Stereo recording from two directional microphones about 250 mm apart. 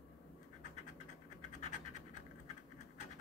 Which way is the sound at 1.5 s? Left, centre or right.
Left.